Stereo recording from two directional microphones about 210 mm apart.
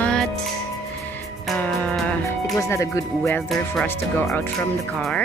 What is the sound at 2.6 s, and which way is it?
Speech, 15° left (ahead or behind).